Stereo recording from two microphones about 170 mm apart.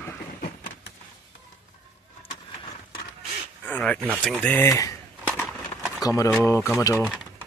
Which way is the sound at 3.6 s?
5° left (ahead or behind).